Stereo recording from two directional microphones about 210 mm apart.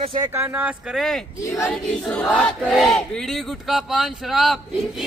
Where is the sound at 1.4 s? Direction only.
15° left (ahead or behind).